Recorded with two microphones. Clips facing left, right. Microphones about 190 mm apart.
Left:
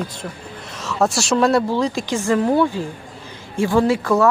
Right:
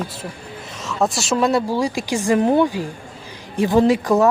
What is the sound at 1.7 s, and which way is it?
Speech, 10° right (ahead or behind).